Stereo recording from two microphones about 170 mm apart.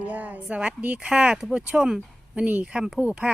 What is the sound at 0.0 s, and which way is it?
Speech, 10° right (ahead or behind).